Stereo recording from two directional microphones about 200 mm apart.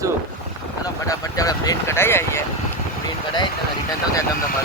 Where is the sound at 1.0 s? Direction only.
20° left (ahead or behind).